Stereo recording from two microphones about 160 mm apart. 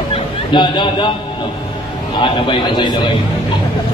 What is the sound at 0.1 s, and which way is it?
Music, 30° left (ahead or behind).